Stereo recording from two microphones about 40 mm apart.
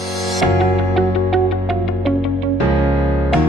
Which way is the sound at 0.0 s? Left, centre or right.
Centre.